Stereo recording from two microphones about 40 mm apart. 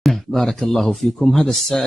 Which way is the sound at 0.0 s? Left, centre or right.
Centre.